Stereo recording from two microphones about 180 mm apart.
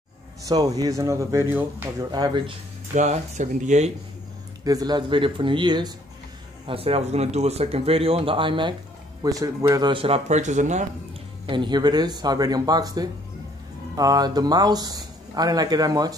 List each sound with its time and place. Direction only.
0.5 s speech: 20° right (ahead or behind)
2.0 s speech: 20° right (ahead or behind)
2.9 s speech: 40° right (ahead or behind)
4.6 s speech: 20° right (ahead or behind); by 10.9 s 40° right (ahead or behind)
11.4 s speech: 25° right (ahead or behind)